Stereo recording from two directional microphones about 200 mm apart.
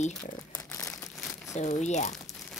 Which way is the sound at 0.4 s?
15° left (ahead or behind).